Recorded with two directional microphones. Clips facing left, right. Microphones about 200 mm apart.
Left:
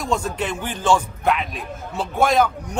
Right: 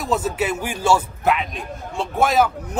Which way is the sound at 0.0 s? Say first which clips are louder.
Right 2 dB; 5° right (ahead or behind).